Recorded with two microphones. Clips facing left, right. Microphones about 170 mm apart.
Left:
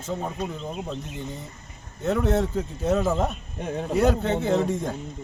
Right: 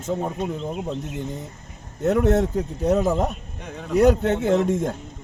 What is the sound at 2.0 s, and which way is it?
Speech, 45° right (ahead or behind).